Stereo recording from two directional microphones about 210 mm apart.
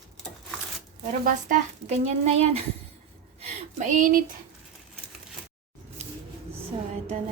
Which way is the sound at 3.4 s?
35° right (ahead or behind).